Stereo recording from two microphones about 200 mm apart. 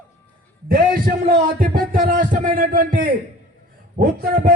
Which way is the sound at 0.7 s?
45° right (ahead or behind).